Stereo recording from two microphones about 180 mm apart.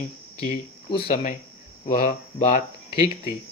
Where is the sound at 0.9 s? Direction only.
35° left (ahead or behind).